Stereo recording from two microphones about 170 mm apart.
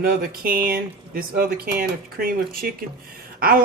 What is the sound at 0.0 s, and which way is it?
A woman's voice, 60° right (ahead or behind).